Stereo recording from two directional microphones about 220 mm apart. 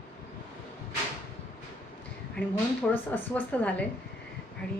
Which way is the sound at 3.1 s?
5° left (ahead or behind).